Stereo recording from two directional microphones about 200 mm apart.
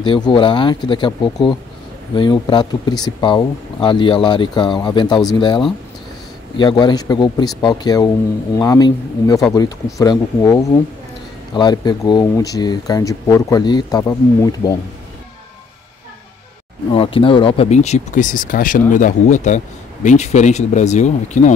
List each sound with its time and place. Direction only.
0.0 s speech: 25° left (ahead or behind)
16.9 s speech: 25° left (ahead or behind)